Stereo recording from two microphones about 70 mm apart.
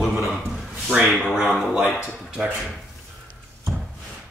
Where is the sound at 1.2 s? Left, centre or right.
Centre.